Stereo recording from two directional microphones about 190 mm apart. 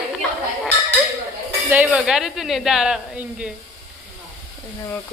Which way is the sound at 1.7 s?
10° right (ahead or behind).